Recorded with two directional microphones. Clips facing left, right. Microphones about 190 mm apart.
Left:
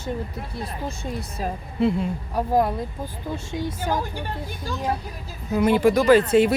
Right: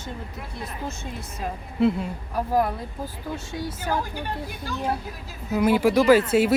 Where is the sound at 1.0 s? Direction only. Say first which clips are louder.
Left 5 dB; 35° left (ahead or behind).